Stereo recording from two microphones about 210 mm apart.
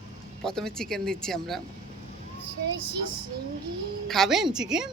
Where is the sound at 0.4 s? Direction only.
5° left (ahead or behind).